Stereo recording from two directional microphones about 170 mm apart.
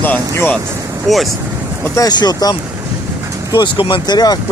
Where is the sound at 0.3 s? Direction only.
15° left (ahead or behind).